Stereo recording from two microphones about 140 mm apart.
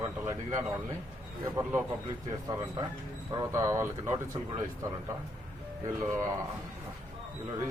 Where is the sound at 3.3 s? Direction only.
25° right (ahead or behind).